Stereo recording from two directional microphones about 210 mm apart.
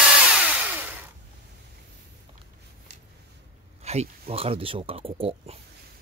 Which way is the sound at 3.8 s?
30° right (ahead or behind).